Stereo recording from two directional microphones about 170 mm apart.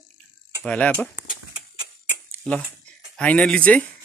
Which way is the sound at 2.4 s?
5° left (ahead or behind).